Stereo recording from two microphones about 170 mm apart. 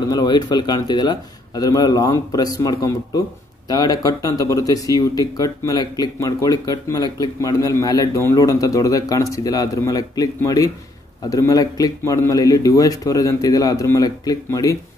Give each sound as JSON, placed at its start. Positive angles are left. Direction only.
{"t": 0.1, "sound": "speech", "side_deg": 25}